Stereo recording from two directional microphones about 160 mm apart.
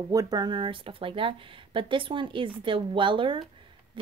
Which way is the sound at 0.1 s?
25° right (ahead or behind).